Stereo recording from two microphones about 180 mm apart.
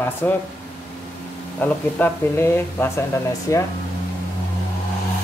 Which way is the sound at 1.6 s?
10° left (ahead or behind).